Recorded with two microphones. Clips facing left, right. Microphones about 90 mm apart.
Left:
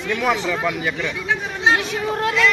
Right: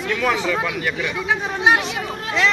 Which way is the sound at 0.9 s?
10° right (ahead or behind).